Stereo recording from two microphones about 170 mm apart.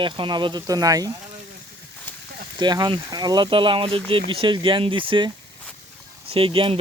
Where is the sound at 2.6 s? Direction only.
25° right (ahead or behind).